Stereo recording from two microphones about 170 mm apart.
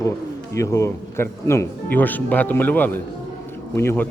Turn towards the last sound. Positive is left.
turn(degrees=15)  # may be behind; listen again after turning